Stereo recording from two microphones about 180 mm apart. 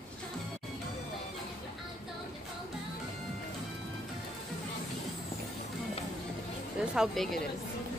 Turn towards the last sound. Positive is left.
turn(degrees=0)  # may be behind; listen again after turning